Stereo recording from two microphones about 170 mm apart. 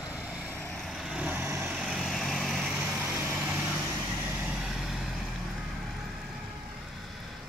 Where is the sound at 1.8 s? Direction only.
Centre (ahead or behind).